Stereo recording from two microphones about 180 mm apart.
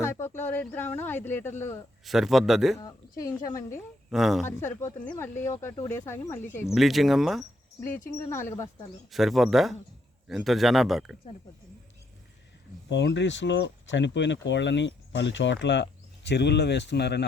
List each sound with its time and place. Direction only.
0.0 s speech: 15° left (ahead or behind)
2.0 s speech: centre (ahead or behind)
2.7 s speech: 15° left (ahead or behind)
4.1 s speech: centre (ahead or behind)
4.4 s speech: 15° left (ahead or behind)
6.7 s speech: centre (ahead or behind)
7.8 s speech: 10° left (ahead or behind)
9.0 s speech: centre (ahead or behind)
12.9 s speech: 75° left (ahead or behind)